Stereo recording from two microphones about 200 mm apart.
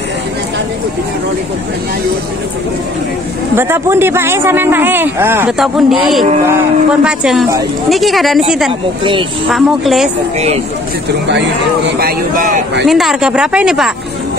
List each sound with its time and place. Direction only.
3.5 s speech: 10° right (ahead or behind)
12.0 s speech: 45° right (ahead or behind)
12.8 s speech: centre (ahead or behind)